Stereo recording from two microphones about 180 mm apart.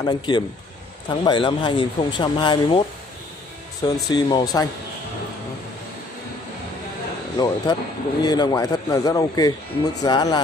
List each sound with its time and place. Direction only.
0.0 s speech: 25° left (ahead or behind)
3.9 s speech: 25° left (ahead or behind)
7.3 s speech: 20° left (ahead or behind)